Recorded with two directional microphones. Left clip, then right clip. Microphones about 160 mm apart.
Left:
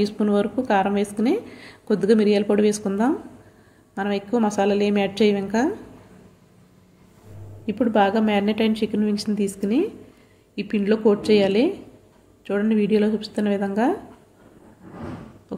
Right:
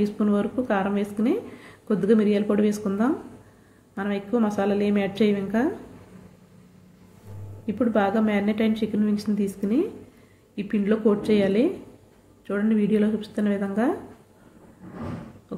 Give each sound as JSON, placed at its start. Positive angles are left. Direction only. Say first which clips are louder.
{"t": 0.0, "sound": "speech", "louder": "left 3 dB", "side_deg": 15}
{"t": 7.6, "sound": "speech", "louder": "left 4 dB", "side_deg": 15}